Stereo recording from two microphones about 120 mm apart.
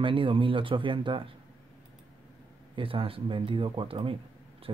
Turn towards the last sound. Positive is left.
turn(degrees=-45)  # may be behind; listen again after turning